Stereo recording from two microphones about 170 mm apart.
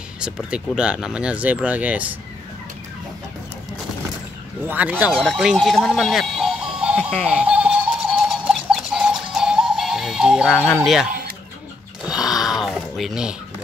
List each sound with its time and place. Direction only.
0.2 s speech: 5° right (ahead or behind)
4.6 s speech: 10° right (ahead or behind)
7.0 s speech: 5° left (ahead or behind)
7.4 s music: 5° right (ahead or behind)
10.5 s speech: 10° left (ahead or behind)
10.8 s speech: centre (ahead or behind)
11.1 s a sound: 60° right (ahead or behind)
12.1 s a sound: 5° right (ahead or behind)